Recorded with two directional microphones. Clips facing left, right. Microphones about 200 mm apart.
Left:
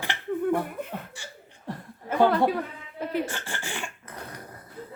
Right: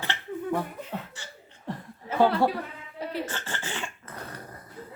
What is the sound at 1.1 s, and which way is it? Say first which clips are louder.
Laughter: left 2 dB; 10° left (ahead or behind).